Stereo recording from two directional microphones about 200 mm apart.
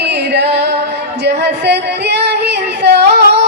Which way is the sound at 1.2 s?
55° right (ahead or behind).